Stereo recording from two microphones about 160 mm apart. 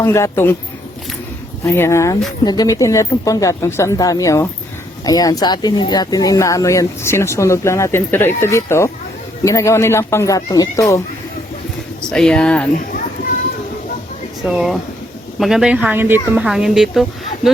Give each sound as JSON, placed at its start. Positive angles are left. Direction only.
{"t": 0.0, "sound": "speech", "side_deg": 15}
{"t": 1.6, "sound": "speech", "side_deg": 15}
{"t": 12.1, "sound": "speech", "side_deg": 5}
{"t": 14.4, "sound": "speech", "side_deg": -5}